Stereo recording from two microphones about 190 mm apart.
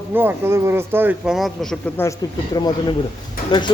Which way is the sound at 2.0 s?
20° left (ahead or behind).